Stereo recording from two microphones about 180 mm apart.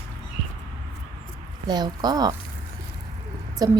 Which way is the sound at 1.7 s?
20° right (ahead or behind).